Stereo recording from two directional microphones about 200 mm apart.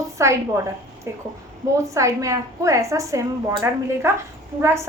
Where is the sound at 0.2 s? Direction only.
15° right (ahead or behind).